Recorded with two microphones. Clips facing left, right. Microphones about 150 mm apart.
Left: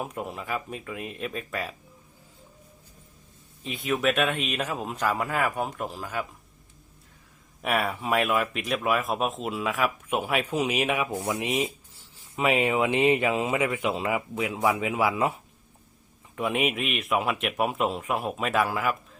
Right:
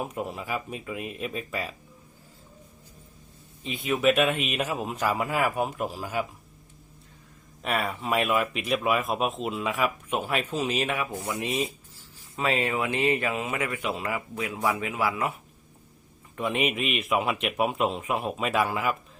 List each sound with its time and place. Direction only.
0.0 s speech: centre (ahead or behind)
3.6 s speech: centre (ahead or behind)
7.6 s speech: 5° left (ahead or behind)
10.2 s speech: 10° left (ahead or behind)
16.4 s speech: 5° left (ahead or behind)